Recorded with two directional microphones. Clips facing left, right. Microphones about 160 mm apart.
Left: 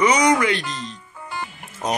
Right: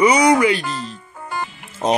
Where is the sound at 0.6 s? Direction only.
45° right (ahead or behind).